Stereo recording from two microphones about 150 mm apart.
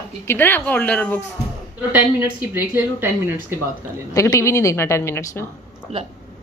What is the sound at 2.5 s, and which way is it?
Speech, 10° right (ahead or behind).